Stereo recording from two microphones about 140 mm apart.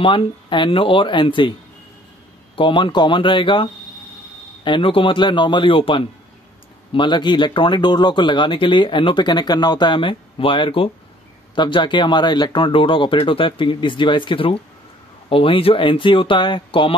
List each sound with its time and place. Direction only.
0.0 s speech: 40° left (ahead or behind)
2.5 s speech: 35° left (ahead or behind)